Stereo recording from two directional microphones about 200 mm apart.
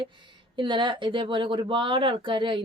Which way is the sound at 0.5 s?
25° right (ahead or behind).